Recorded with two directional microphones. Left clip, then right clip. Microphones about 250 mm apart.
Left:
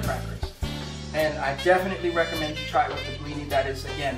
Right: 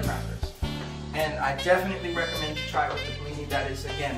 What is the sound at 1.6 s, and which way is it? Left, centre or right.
Speech, centre.